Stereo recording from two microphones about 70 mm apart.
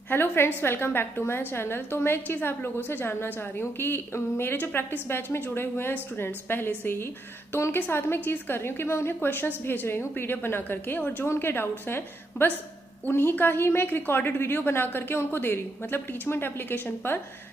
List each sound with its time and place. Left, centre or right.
0.1 s a woman's voice: left